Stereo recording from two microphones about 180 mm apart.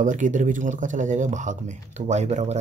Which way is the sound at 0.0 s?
45° right (ahead or behind).